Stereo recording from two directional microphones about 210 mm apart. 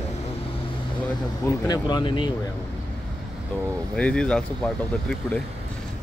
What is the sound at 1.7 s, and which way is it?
Speech, 20° left (ahead or behind).